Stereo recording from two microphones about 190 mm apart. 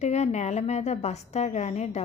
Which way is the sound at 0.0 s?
35° left (ahead or behind).